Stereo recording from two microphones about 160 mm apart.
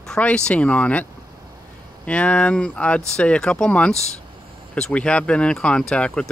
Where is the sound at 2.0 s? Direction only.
10° left (ahead or behind).